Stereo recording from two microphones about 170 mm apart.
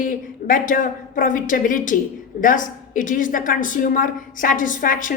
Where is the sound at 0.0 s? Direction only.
55° left (ahead or behind).